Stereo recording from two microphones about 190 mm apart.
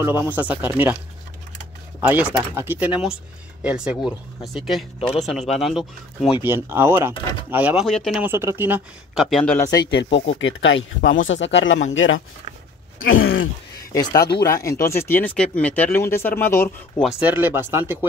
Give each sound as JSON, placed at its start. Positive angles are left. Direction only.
{"t": 0.0, "sound": "speech", "side_deg": -10}
{"t": 2.0, "sound": "speech", "side_deg": -10}
{"t": 8.2, "sound": "speech", "side_deg": -15}
{"t": 9.8, "sound": "speech", "side_deg": 65}
{"t": 10.1, "sound": "speech", "side_deg": 80}
{"t": 13.9, "sound": "speech", "side_deg": 20}
{"t": 17.0, "sound": "speech", "side_deg": -10}